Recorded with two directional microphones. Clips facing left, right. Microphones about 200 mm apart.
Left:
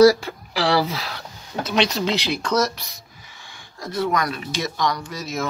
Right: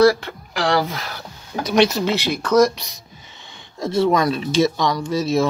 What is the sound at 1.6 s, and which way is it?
Speech, 10° right (ahead or behind).